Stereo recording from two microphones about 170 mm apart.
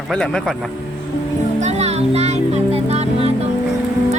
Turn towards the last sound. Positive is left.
turn(degrees=-35)  # may be behind; listen again after turning